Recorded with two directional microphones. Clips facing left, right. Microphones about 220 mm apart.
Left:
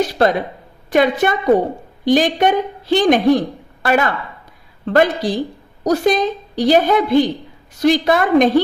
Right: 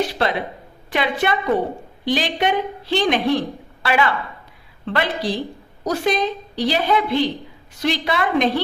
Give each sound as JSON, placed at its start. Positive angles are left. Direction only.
{"t": 0.1, "sound": "a woman's voice", "side_deg": 45}